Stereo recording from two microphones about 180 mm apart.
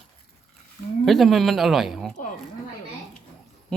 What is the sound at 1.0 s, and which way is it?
Speech, centre (ahead or behind).